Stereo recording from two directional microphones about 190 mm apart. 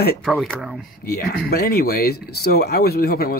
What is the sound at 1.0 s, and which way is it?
Speech, 55° left (ahead or behind).